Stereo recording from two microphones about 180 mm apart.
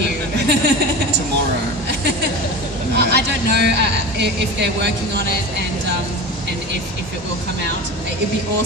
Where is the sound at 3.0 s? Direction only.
65° right (ahead or behind).